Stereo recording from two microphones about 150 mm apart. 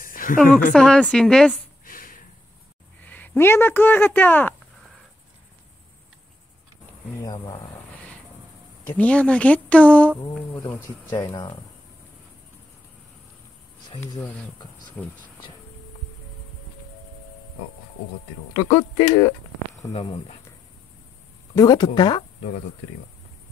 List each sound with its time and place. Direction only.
0.0 s a sound: 70° left (ahead or behind)
0.4 s a woman's voice: centre (ahead or behind)
1.9 s snort: 70° left (ahead or behind)
3.1 s speech: 10° left (ahead or behind)
8.9 s speech: 10° left (ahead or behind)
11.1 s speech: 30° left (ahead or behind)
15.0 s speech: 10° left (ahead or behind)
18.6 s speech: 25° left (ahead or behind)
19.9 s speech: 45° left (ahead or behind)
21.5 s speech: 30° left (ahead or behind)